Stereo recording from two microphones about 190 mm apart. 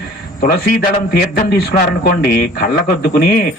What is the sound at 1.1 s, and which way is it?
Speech, 50° left (ahead or behind).